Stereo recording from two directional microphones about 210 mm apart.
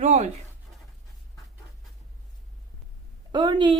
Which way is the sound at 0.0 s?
30° right (ahead or behind).